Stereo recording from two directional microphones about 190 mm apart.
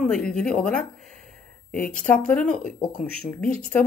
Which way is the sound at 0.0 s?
5° left (ahead or behind).